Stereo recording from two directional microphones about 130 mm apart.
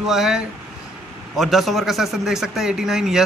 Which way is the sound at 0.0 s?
5° right (ahead or behind).